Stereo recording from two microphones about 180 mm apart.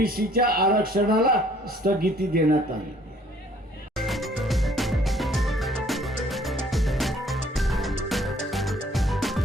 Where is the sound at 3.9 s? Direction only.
Centre (ahead or behind).